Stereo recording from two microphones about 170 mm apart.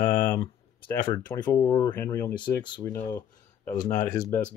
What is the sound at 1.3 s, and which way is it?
Speech, 20° left (ahead or behind).